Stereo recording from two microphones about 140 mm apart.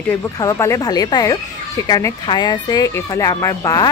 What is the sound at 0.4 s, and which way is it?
Speech, 25° left (ahead or behind).